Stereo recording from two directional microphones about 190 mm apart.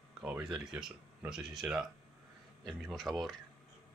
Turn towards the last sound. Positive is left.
turn(degrees=0)  # may be behind; listen again after turning